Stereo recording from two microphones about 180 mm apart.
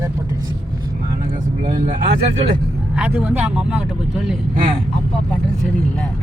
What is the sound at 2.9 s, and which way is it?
Speech, 5° right (ahead or behind).